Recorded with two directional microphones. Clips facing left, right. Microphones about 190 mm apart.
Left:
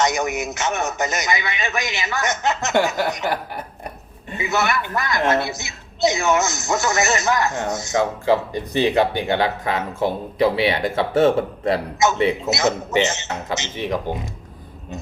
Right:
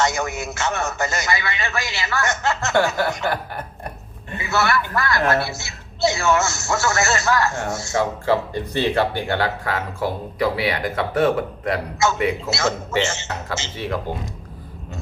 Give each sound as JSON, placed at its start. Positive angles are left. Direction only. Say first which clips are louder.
{"t": 0.0, "sound": "a woman's voice", "louder": "left 2 dB", "side_deg": 20}
{"t": 4.4, "sound": "a woman's voice", "louder": "even", "side_deg": 20}